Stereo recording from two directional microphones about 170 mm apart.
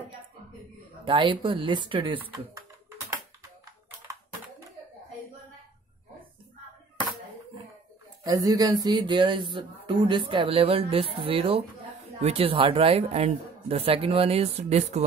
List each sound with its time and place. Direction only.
1.0 s speech: 30° right (ahead or behind)
8.2 s a woman's voice: 20° right (ahead or behind); by 15.0 s 40° right (ahead or behind)